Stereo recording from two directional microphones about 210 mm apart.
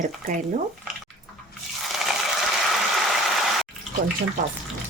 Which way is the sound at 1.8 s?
Centre (ahead or behind).